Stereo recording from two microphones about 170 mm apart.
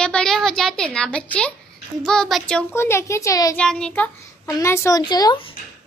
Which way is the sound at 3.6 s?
5° left (ahead or behind).